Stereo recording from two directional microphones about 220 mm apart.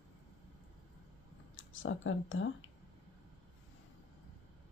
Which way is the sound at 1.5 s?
65° left (ahead or behind).